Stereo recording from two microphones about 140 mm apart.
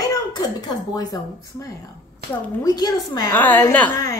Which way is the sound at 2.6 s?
25° left (ahead or behind).